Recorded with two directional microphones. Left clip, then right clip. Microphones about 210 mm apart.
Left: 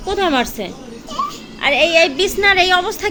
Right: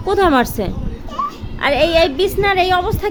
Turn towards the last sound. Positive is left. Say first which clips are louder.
# left 1 dB
turn(degrees=-5)  # may be behind; listen again after turning